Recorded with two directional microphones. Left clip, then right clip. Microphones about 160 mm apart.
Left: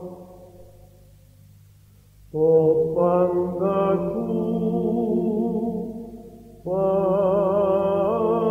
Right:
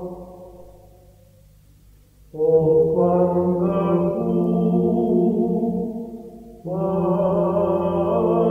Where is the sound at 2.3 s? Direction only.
35° right (ahead or behind).